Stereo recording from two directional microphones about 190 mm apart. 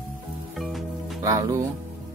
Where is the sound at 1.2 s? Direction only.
20° right (ahead or behind).